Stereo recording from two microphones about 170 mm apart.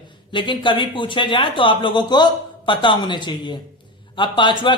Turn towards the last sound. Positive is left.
turn(degrees=30)  # may be behind; listen again after turning